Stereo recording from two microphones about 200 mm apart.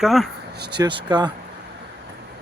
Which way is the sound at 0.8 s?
25° right (ahead or behind).